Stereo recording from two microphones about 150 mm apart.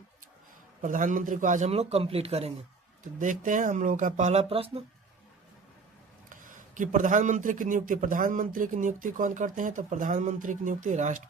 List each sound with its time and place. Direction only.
0.8 s a man's voice: 60° right (ahead or behind)
1.7 s speech: 40° right (ahead or behind)
3.0 s a man's voice: 60° right (ahead or behind); by 4.8 s 40° right (ahead or behind)
6.5 s a man's voice: 60° right (ahead or behind)